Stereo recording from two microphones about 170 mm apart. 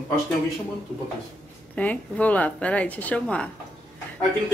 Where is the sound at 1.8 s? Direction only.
10° left (ahead or behind).